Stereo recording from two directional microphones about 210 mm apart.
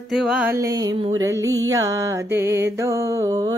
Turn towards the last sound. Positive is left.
turn(degrees=-15)  # may be behind; listen again after turning